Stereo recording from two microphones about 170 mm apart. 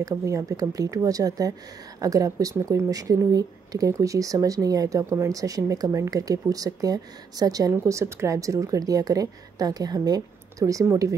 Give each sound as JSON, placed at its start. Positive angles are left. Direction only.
{"t": 0.0, "sound": "speech", "side_deg": -20}